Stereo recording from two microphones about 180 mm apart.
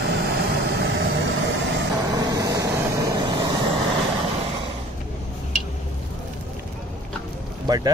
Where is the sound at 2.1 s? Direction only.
20° right (ahead or behind).